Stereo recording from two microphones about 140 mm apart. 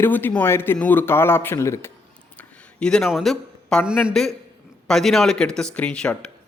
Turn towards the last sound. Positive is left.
turn(degrees=5)  # may be behind; listen again after turning